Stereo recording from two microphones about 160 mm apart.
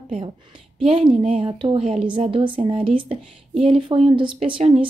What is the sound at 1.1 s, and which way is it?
Speech, 40° right (ahead or behind).